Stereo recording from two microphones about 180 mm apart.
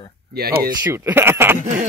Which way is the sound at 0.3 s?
60° right (ahead or behind).